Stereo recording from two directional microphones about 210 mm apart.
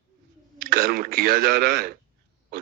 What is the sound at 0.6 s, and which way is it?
A man's voice, 45° right (ahead or behind).